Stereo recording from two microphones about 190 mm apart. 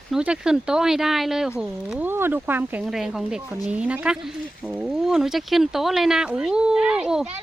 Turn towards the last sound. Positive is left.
turn(degrees=-5)  # may be behind; listen again after turning